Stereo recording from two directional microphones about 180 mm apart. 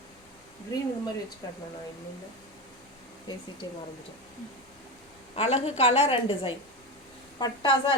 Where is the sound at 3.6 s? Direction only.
25° left (ahead or behind).